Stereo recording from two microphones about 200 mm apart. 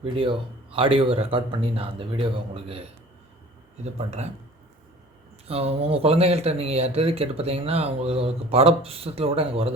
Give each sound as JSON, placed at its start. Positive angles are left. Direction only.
{"t": 0.0, "sound": "speech", "side_deg": -25}
{"t": 5.5, "sound": "speech", "side_deg": -30}